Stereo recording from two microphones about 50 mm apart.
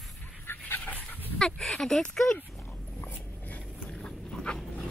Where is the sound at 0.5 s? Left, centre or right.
Left.